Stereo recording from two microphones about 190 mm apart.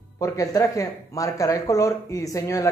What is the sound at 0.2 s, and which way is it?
Speech, 20° left (ahead or behind).